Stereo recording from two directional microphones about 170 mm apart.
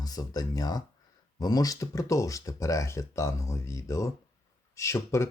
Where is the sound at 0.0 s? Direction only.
20° left (ahead or behind).